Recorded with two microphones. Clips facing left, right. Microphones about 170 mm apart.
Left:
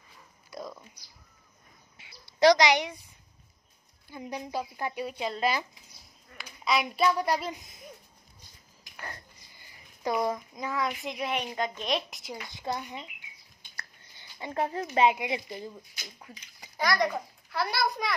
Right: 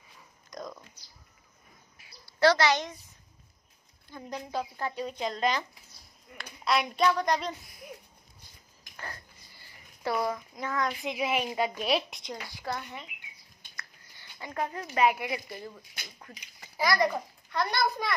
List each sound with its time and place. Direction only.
0.5 s a sound: 5° left (ahead or behind)
2.0 s a sound: 25° left (ahead or behind)
4.1 s speech: 10° left (ahead or behind)
9.1 s a child's voice: 20° left (ahead or behind); by 12.2 s 5° right (ahead or behind)
12.4 s a woman's voice: 20° left (ahead or behind)
14.1 s a woman's voice: 25° left (ahead or behind); by 16.4 s 10° left (ahead or behind)
16.7 s a child's voice: centre (ahead or behind)